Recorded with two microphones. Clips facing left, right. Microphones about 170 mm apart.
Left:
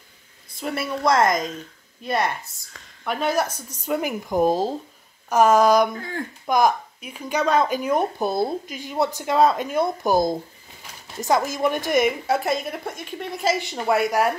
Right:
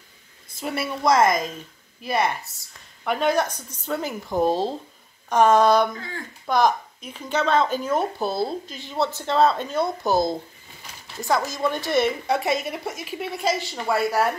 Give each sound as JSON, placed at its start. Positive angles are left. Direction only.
{"t": 0.6, "sound": "a woman's voice", "side_deg": 0}
{"t": 5.9, "sound": "speech", "side_deg": 45}
{"t": 6.4, "sound": "a woman's voice", "side_deg": 10}
{"t": 13.6, "sound": "speech", "side_deg": 15}